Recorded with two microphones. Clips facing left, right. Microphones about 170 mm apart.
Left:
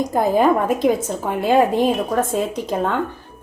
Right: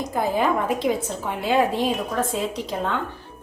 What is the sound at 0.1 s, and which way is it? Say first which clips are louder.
A woman's voice: left 5 dB; 45° left (ahead or behind).